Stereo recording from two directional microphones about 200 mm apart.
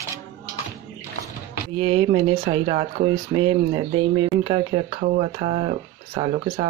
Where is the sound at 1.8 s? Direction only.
25° right (ahead or behind).